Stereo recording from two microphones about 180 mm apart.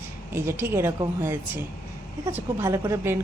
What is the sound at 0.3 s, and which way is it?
Speech, 15° right (ahead or behind).